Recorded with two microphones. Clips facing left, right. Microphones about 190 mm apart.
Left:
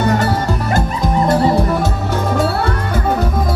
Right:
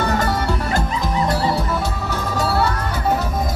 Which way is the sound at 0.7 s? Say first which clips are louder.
Left 4 dB; 55° left (ahead or behind).